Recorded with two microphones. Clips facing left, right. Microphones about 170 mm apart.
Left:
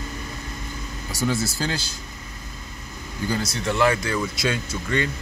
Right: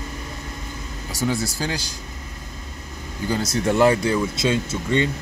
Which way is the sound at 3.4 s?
45° right (ahead or behind).